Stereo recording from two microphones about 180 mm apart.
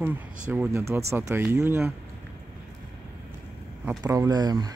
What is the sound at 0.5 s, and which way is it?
Speech, 15° right (ahead or behind).